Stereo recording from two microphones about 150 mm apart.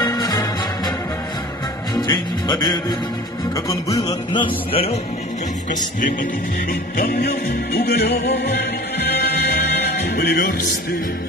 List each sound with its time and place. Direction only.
0.0 s music: 25° left (ahead or behind)
2.0 s music: 30° left (ahead or behind)
6.7 s music: 80° left
9.1 s music: 90° left